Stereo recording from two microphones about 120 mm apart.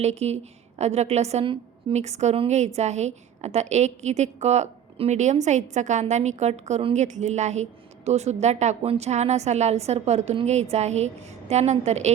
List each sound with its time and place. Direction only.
0.0 s a woman's voice: 65° right (ahead or behind)